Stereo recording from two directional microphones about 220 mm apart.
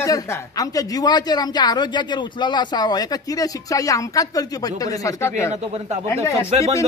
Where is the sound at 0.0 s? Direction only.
15° left (ahead or behind).